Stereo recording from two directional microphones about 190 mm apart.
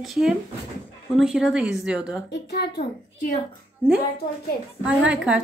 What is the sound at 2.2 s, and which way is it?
Speech, 60° left (ahead or behind).